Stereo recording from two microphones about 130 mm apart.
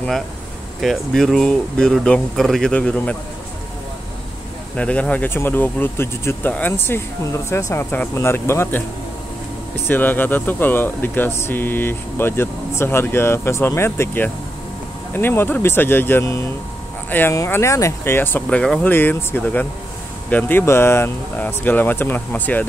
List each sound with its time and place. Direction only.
0.7 s speech: centre (ahead or behind)
4.7 s speech: 10° left (ahead or behind)
9.8 s speech: 15° left (ahead or behind)